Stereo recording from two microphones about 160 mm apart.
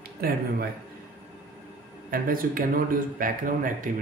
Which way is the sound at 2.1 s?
65° right (ahead or behind).